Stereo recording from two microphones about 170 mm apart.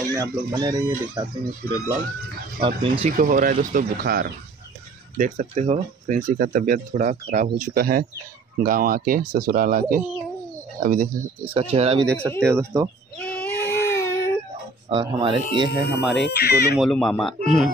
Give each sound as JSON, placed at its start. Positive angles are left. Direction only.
{"t": 0.1, "sound": "speech", "side_deg": -25}
{"t": 2.6, "sound": "speech", "side_deg": -35}
{"t": 3.2, "sound": "speech", "side_deg": -55}
{"t": 5.1, "sound": "speech", "side_deg": -50}
{"t": 11.7, "sound": "speech", "side_deg": -35}
{"t": 12.2, "sound": "speech", "side_deg": 10}
{"t": 12.4, "sound": "speech", "side_deg": -20}
{"t": 13.2, "sound": "a sound", "side_deg": 10}
{"t": 14.9, "sound": "speech", "side_deg": -30}
{"t": 16.2, "sound": "speech", "side_deg": 80}
{"t": 16.7, "sound": "speech", "side_deg": 0}